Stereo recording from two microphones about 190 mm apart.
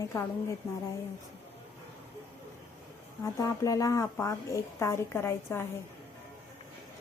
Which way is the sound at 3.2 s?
15° left (ahead or behind).